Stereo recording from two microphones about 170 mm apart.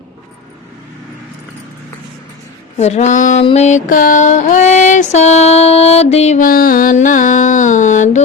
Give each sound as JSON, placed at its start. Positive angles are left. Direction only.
{"t": 2.7, "sound": "music", "side_deg": 40}